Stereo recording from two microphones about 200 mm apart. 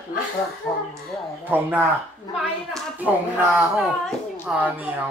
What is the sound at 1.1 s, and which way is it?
Speech, 10° right (ahead or behind).